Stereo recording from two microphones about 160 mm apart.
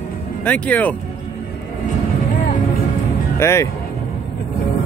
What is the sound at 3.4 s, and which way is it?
Speech, 15° left (ahead or behind).